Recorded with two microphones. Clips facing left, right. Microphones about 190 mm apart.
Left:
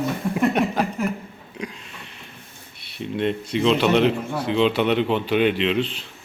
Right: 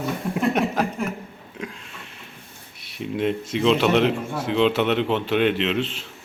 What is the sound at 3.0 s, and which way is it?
A man's voice, 5° right (ahead or behind).